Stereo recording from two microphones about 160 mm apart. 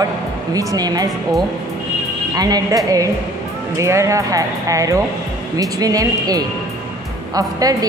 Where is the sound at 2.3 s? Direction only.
25° right (ahead or behind).